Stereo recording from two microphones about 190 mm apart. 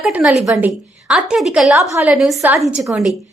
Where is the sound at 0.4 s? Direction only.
15° right (ahead or behind).